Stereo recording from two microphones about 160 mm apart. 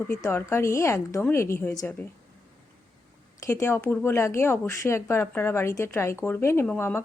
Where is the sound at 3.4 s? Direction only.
15° left (ahead or behind).